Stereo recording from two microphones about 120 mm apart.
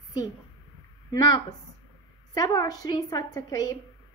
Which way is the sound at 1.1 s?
35° left (ahead or behind).